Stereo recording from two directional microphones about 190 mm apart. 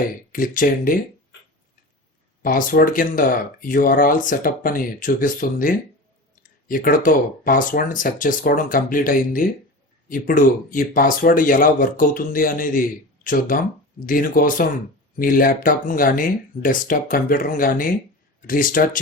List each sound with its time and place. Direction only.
0.3 s speech: 45° left (ahead or behind)
2.4 s speech: 45° left (ahead or behind)